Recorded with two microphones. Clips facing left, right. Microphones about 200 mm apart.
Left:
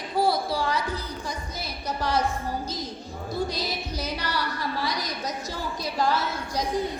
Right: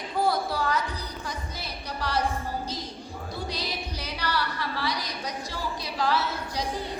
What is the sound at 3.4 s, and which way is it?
Music, 45° left (ahead or behind).